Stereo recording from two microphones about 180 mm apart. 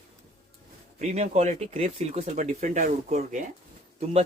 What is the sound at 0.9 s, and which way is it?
Speech, 40° right (ahead or behind).